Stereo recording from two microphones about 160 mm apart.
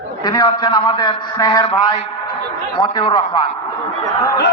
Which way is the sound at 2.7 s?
30° left (ahead or behind).